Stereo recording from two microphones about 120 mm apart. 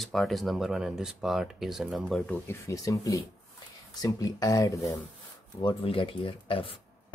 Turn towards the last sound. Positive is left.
turn(degrees=50)  # may be behind; listen again after turning